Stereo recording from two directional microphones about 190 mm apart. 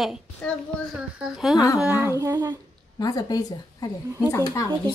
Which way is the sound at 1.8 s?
10° right (ahead or behind).